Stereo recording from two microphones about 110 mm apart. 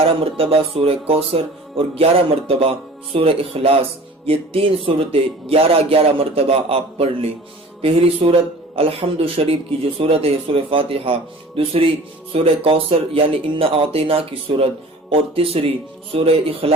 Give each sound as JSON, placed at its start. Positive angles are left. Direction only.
{"t": 0.0, "sound": "speech", "side_deg": -60}